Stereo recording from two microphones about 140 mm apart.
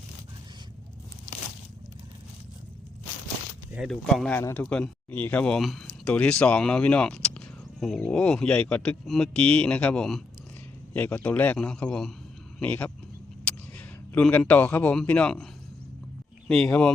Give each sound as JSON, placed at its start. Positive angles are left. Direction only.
{"t": 3.8, "sound": "speech", "side_deg": 5}
{"t": 4.4, "sound": "speech", "side_deg": 20}
{"t": 16.5, "sound": "speech", "side_deg": 5}